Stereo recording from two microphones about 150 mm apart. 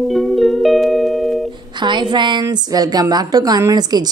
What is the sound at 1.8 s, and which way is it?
A woman's voice, 30° right (ahead or behind).